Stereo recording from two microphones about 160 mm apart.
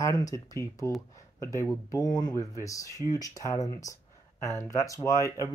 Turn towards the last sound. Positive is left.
turn(degrees=20)  # may be behind; listen again after turning